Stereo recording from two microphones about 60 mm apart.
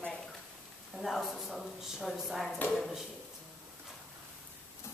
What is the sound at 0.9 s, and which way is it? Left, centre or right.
Speech, centre.